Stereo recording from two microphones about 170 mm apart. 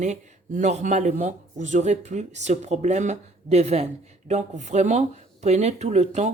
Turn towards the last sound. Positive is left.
turn(degrees=-40)  # may be behind; listen again after turning